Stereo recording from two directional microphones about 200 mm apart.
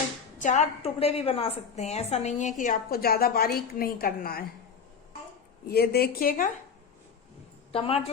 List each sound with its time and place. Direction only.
0.3 s a woman's voice: 40° left (ahead or behind)
5.6 s a woman's voice: 50° left (ahead or behind)
7.7 s a woman's voice: 30° left (ahead or behind)